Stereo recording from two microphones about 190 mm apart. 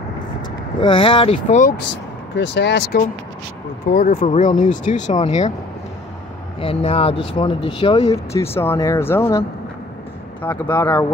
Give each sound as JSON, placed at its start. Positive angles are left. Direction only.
{"t": 0.7, "sound": "speech", "side_deg": 25}
{"t": 2.3, "sound": "speech", "side_deg": 65}
{"t": 3.9, "sound": "speech", "side_deg": 40}
{"t": 6.6, "sound": "speech", "side_deg": 30}
{"t": 8.4, "sound": "speech", "side_deg": 15}
{"t": 10.4, "sound": "speech", "side_deg": 10}